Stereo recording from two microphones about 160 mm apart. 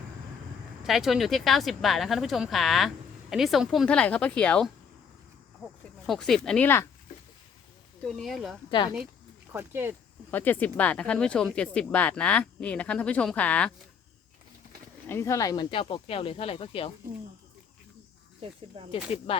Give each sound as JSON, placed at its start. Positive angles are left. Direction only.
{"t": 0.9, "sound": "speech", "side_deg": 0}
{"t": 6.1, "sound": "speech", "side_deg": 0}
{"t": 8.1, "sound": "speech", "side_deg": 0}
{"t": 9.5, "sound": "speech", "side_deg": -15}
{"t": 10.3, "sound": "speech", "side_deg": 10}
{"t": 15.0, "sound": "speech", "side_deg": 15}
{"t": 18.9, "sound": "speech", "side_deg": 35}